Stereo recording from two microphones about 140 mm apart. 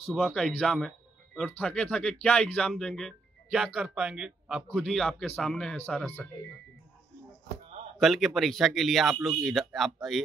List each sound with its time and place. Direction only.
0.1 s speech: centre (ahead or behind)
8.0 s speech: centre (ahead or behind)